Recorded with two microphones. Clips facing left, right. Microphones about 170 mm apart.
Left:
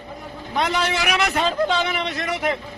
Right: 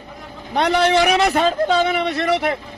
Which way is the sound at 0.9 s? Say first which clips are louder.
Right 7 dB; 35° right (ahead or behind).